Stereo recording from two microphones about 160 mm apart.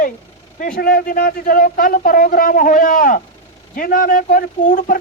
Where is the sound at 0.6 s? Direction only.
70° left (ahead or behind).